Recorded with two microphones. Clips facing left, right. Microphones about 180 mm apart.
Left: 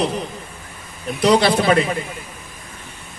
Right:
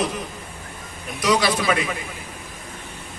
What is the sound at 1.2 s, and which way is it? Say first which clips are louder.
Speech: left 5 dB; 30° left (ahead or behind).